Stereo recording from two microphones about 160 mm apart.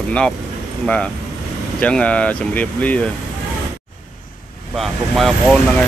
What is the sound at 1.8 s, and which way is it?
Speech, 5° left (ahead or behind).